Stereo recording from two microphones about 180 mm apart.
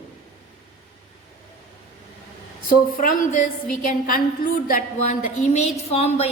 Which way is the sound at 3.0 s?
45° left (ahead or behind).